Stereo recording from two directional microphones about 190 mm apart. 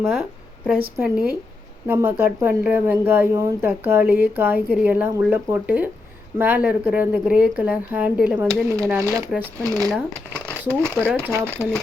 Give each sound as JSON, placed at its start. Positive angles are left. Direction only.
{"t": 0.0, "sound": "a woman's voice", "side_deg": -5}